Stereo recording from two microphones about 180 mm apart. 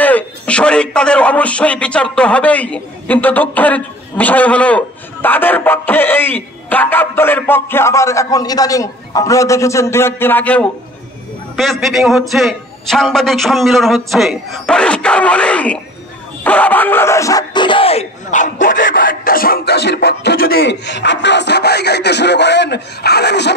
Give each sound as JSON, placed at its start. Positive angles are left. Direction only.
{"t": 0.0, "sound": "a man's voice", "side_deg": 5}
{"t": 18.3, "sound": "speech", "side_deg": 45}